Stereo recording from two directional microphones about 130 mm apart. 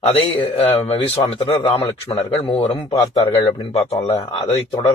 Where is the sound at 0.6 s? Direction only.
50° left (ahead or behind).